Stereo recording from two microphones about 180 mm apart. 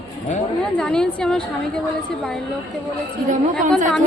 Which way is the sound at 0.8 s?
5° left (ahead or behind).